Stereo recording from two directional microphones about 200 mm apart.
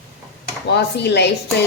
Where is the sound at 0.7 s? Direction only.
55° left (ahead or behind).